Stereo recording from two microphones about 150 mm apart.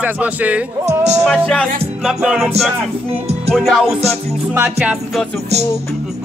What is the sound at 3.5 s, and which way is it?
Music, centre (ahead or behind).